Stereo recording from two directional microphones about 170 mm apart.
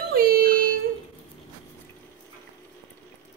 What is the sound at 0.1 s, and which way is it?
Child singing, 60° right (ahead or behind).